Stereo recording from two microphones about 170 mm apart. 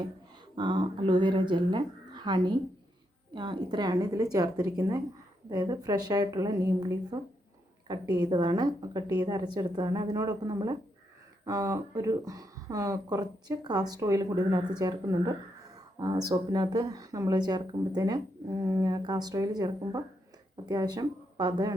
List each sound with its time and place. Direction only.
0.5 s speech: 25° right (ahead or behind)